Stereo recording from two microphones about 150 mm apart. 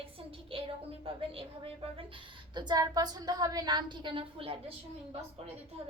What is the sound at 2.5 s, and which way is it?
A woman's voice, 25° right (ahead or behind).